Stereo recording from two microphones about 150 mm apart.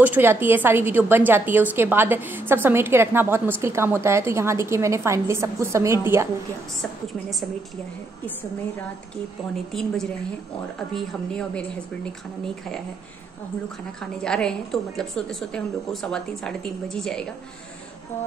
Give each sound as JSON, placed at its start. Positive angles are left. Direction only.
{"t": 0.0, "sound": "a woman's voice", "side_deg": -15}
{"t": 6.8, "sound": "a woman's voice", "side_deg": 0}
{"t": 9.7, "sound": "a woman's voice", "side_deg": 5}
{"t": 14.2, "sound": "a woman's voice", "side_deg": 5}